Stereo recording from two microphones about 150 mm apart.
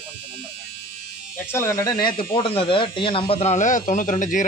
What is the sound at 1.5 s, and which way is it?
Speech, 20° left (ahead or behind).